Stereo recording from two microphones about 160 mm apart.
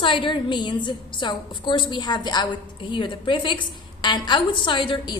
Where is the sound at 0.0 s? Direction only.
30° left (ahead or behind).